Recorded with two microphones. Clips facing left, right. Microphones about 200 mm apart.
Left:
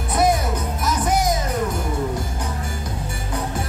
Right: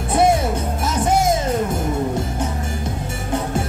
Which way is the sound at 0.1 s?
25° right (ahead or behind).